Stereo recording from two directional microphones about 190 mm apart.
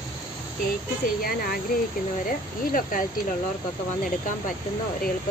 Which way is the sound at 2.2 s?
45° left (ahead or behind).